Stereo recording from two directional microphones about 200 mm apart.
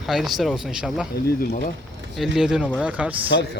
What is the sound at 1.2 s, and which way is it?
Speech, 50° left (ahead or behind).